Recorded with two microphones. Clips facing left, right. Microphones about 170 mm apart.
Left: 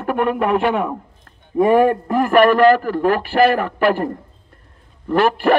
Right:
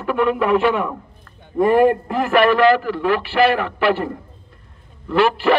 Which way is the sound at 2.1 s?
50° left (ahead or behind).